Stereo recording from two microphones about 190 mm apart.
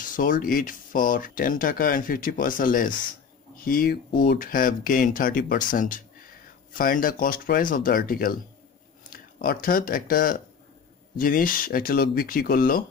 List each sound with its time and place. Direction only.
0.0 s speech: 45° left (ahead or behind)